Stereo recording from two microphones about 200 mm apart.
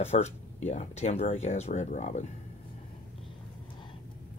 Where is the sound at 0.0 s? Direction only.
35° left (ahead or behind).